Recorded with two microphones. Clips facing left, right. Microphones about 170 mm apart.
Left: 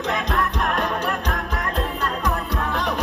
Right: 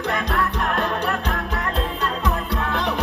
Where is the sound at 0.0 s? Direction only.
20° left (ahead or behind).